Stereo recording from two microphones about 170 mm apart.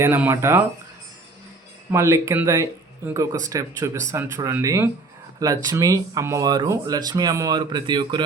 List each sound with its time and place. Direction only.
0.0 s speech: 15° right (ahead or behind)
1.9 s speech: 15° right (ahead or behind)